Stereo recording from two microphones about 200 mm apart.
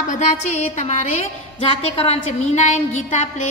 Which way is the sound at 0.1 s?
35° left (ahead or behind).